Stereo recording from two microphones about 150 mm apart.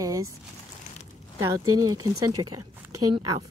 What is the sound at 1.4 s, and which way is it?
A woman's voice, 25° right (ahead or behind).